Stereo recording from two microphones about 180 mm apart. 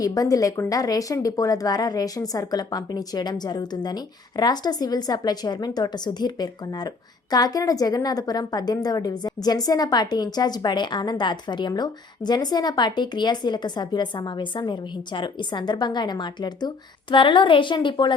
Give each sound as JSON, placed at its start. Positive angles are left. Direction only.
{"t": 0.0, "sound": "speech", "side_deg": 20}